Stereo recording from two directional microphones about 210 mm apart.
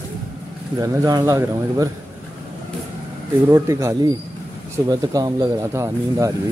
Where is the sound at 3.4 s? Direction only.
15° right (ahead or behind).